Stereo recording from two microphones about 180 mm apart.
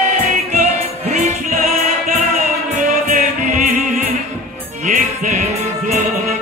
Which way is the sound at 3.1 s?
45° right (ahead or behind).